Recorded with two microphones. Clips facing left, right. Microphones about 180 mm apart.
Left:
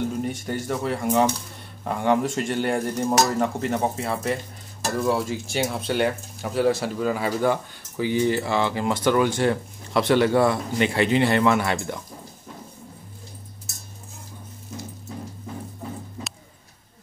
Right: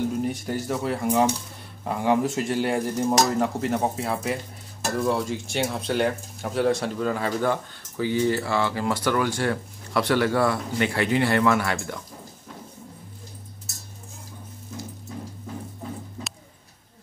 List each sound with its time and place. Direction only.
0.2 s speech: centre (ahead or behind); by 12.0 s 20° left (ahead or behind)